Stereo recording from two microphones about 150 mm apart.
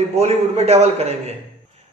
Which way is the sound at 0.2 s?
45° right (ahead or behind).